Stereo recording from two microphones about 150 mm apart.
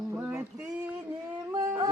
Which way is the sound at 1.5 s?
25° right (ahead or behind).